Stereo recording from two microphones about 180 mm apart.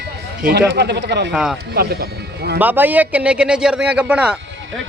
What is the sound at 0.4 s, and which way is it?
Speech, 70° right (ahead or behind).